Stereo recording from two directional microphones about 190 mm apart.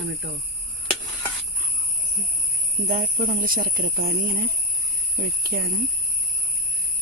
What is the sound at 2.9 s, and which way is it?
Speech, 45° right (ahead or behind).